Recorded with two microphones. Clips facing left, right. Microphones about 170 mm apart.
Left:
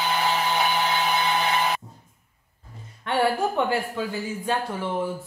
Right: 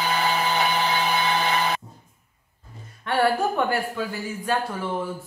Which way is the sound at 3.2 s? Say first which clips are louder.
Right 1 dB; 20° left (ahead or behind).